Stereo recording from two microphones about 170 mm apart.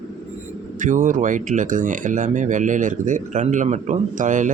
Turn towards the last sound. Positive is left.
turn(degrees=-50)  # may be behind; listen again after turning